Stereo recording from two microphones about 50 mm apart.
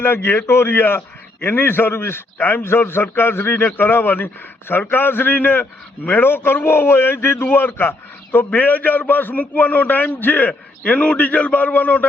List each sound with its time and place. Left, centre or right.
0.0 s a man's voice: left